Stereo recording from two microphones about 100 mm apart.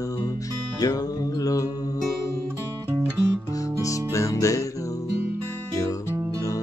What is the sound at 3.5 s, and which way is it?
Music, 35° left (ahead or behind).